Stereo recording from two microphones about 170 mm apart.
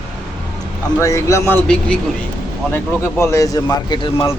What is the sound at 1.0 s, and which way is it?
Speech, 20° left (ahead or behind).